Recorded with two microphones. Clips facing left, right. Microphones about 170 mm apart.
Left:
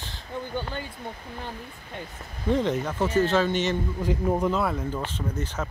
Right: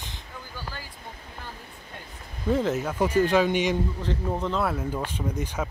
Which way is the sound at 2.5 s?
5° right (ahead or behind).